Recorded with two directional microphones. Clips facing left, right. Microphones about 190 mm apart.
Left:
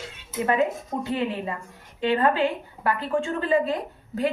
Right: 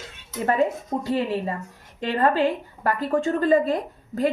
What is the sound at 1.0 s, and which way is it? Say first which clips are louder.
A woman's voice: right 3 dB; 40° right (ahead or behind).